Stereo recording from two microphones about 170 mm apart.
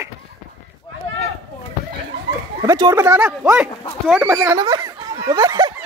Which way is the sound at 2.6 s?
20° right (ahead or behind).